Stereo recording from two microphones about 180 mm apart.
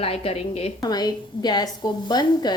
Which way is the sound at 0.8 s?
20° left (ahead or behind).